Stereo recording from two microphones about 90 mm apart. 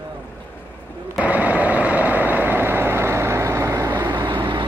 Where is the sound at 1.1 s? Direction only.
15° right (ahead or behind).